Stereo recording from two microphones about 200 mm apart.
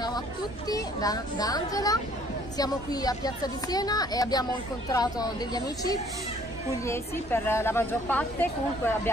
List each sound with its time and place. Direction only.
0.7 s a woman's voice: 20° left (ahead or behind)